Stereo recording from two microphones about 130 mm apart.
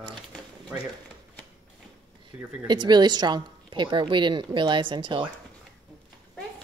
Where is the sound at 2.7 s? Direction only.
35° right (ahead or behind).